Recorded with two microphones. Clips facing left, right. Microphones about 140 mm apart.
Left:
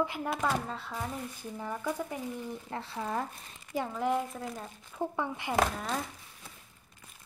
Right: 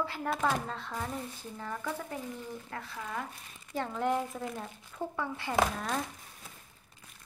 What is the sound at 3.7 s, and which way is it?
Speech, 5° left (ahead or behind).